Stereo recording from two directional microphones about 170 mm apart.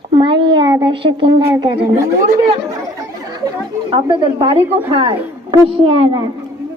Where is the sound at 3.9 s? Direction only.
30° right (ahead or behind).